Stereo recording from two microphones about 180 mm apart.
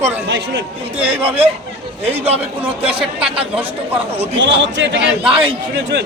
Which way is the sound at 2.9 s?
30° right (ahead or behind).